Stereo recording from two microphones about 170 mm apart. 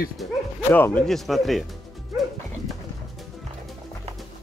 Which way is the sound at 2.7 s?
Centre (ahead or behind).